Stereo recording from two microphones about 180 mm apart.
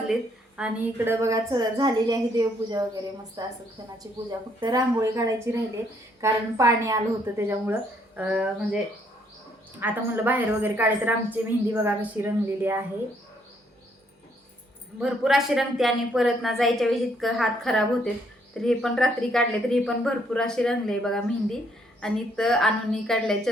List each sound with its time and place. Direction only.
0.1 s a woman's voice: 5° right (ahead or behind)
9.8 s a woman's voice: 10° right (ahead or behind)
15.0 s a woman's voice: centre (ahead or behind)